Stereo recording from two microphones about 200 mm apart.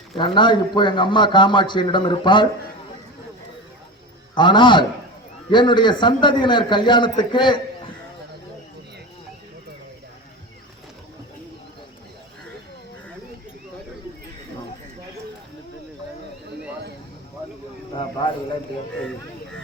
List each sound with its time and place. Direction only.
0.2 s a man's voice: 25° left (ahead or behind)
4.4 s a man's voice: 25° left (ahead or behind)